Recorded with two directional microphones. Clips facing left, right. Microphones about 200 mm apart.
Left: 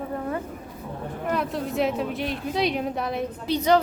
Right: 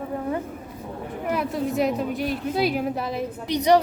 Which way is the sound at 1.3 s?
Centre (ahead or behind).